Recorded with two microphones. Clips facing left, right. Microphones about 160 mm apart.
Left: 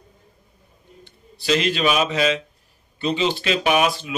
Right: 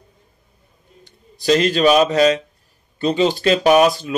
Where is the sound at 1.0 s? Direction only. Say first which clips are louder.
Right 6 dB; 40° right (ahead or behind).